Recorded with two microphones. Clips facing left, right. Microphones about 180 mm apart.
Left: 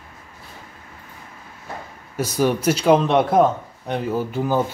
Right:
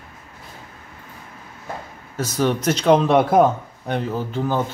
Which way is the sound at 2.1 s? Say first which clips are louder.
Left 1 dB; 10° left (ahead or behind).